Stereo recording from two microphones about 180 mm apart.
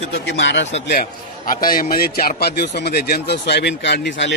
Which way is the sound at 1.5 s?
50° left (ahead or behind).